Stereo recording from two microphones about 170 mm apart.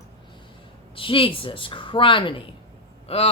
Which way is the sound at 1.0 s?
30° left (ahead or behind).